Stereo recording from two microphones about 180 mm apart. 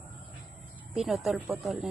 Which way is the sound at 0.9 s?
Centre (ahead or behind).